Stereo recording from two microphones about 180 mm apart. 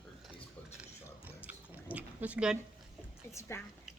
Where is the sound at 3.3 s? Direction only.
15° left (ahead or behind).